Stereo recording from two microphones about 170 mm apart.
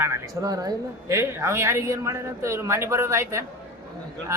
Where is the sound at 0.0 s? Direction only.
20° right (ahead or behind).